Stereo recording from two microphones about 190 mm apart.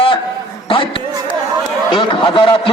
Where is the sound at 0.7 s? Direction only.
30° left (ahead or behind).